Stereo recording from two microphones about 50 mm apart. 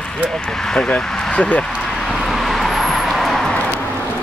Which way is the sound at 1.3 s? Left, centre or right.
Left.